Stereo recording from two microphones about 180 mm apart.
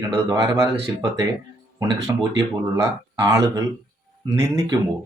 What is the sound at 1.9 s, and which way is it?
Speech, 20° right (ahead or behind).